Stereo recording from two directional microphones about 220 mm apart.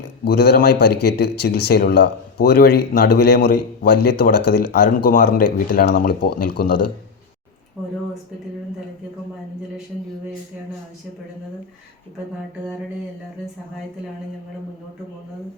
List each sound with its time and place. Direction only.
0.3 s speech: 45° left (ahead or behind)